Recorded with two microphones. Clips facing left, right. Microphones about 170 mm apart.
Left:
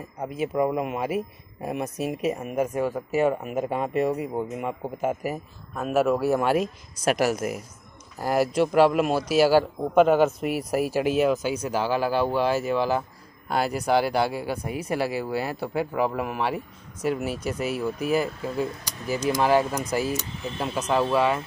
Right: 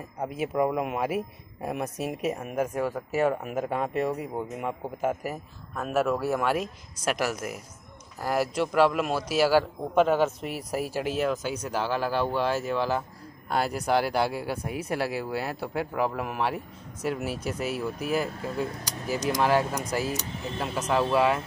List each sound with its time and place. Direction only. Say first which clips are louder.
0.2 s speech: left 2 dB; centre (ahead or behind)